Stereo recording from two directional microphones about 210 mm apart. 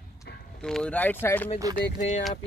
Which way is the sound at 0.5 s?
5° left (ahead or behind).